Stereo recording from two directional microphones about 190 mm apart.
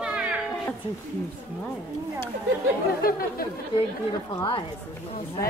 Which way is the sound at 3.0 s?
50° left (ahead or behind).